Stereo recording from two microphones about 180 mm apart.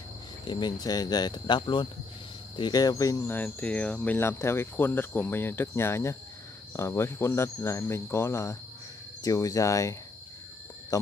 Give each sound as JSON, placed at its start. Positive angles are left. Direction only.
{"t": 0.5, "sound": "speech", "side_deg": 25}